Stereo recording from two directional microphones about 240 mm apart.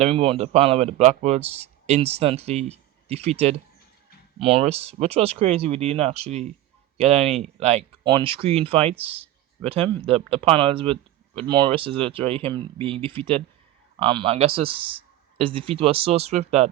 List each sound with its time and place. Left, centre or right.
0.0 s speech: right